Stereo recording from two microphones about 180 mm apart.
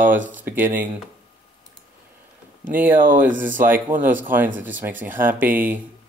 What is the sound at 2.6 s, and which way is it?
Speech, 10° right (ahead or behind).